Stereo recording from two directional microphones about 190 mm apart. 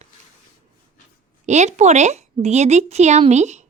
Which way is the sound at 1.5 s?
35° right (ahead or behind).